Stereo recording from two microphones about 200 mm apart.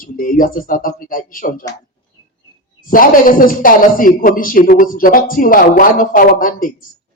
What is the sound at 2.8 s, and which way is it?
A man's voice, 45° left (ahead or behind).